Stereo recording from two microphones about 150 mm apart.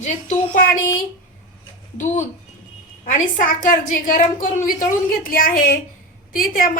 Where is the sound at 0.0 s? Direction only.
60° left (ahead or behind).